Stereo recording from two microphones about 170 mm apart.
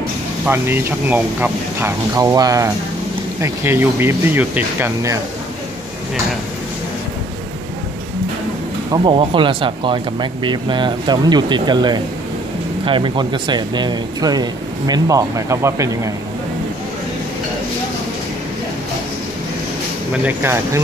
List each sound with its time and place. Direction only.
0.5 s speech: 15° right (ahead or behind)
8.9 s speech: 30° right (ahead or behind)
20.2 s speech: 15° right (ahead or behind)